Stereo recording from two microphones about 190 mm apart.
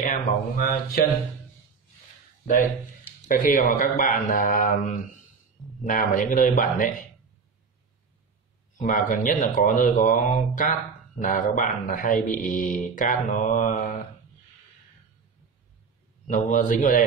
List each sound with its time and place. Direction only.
0.0 s speech: 45° left (ahead or behind)
3.2 s speech: 45° left (ahead or behind)
8.7 s speech: 45° left (ahead or behind)
16.3 s speech: 40° left (ahead or behind)